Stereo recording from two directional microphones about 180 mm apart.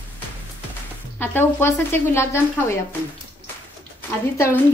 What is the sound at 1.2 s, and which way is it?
A woman's voice, 10° left (ahead or behind).